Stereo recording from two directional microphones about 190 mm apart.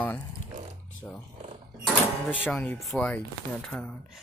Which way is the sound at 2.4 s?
10° left (ahead or behind).